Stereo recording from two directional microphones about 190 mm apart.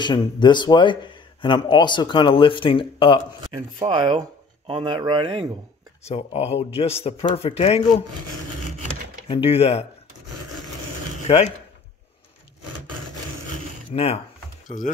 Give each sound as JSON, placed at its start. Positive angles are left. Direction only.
{"t": 0.0, "sound": "a man's voice", "side_deg": 25}
{"t": 3.5, "sound": "speech", "side_deg": -20}
{"t": 6.0, "sound": "a man's voice", "side_deg": 35}
{"t": 9.3, "sound": "a man's voice", "side_deg": 30}
{"t": 11.2, "sound": "speech", "side_deg": 35}
{"t": 13.9, "sound": "a man's voice", "side_deg": 30}